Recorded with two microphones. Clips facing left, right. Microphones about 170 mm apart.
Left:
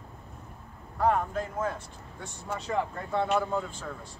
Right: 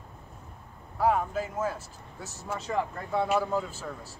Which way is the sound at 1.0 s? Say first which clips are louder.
Even; 5° right (ahead or behind).